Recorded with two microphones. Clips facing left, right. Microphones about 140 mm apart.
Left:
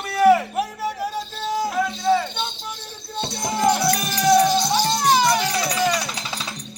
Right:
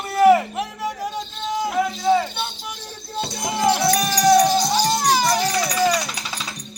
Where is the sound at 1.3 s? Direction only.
35° left (ahead or behind).